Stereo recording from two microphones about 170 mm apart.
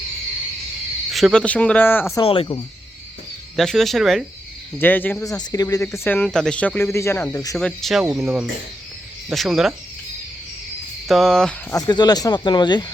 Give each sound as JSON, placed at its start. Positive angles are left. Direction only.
{"t": 1.1, "sound": "speech", "side_deg": 0}
{"t": 2.2, "sound": "speech", "side_deg": 35}
{"t": 3.5, "sound": "speech", "side_deg": 0}
{"t": 4.8, "sound": "speech", "side_deg": 10}
{"t": 7.5, "sound": "speech", "side_deg": 0}
{"t": 11.1, "sound": "speech", "side_deg": 0}
{"t": 11.7, "sound": "speech", "side_deg": 25}